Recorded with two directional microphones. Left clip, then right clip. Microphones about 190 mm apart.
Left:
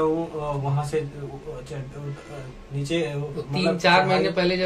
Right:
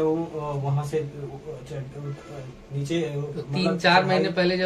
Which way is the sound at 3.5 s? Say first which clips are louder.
Left 1 dB; 20° right (ahead or behind).